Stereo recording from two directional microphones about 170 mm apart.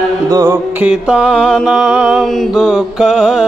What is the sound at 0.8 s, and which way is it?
Mantra, 5° right (ahead or behind).